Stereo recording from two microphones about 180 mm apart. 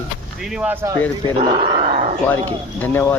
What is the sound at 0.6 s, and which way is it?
Speech, 10° right (ahead or behind).